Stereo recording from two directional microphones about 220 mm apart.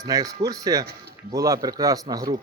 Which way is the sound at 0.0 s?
15° right (ahead or behind).